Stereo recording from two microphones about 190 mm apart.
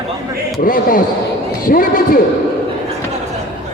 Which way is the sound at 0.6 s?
50° left (ahead or behind).